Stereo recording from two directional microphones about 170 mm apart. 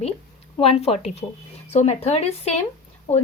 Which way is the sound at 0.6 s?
35° left (ahead or behind).